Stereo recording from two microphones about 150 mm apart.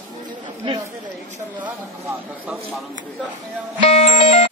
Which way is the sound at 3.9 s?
45° left (ahead or behind).